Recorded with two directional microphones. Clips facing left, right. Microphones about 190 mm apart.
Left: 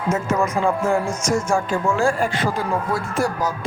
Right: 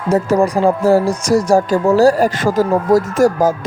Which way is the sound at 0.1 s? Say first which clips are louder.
Right 8 dB; 35° right (ahead or behind).